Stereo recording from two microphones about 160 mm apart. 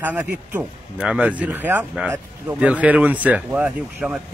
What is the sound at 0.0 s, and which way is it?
Speech, 10° right (ahead or behind).